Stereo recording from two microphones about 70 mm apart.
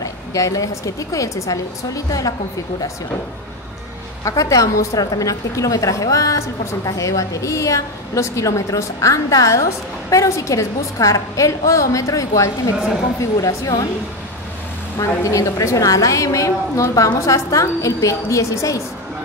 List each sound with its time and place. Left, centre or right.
0.0 s a woman's voice: left
4.2 s a woman's voice: left
15.0 s a woman's voice: left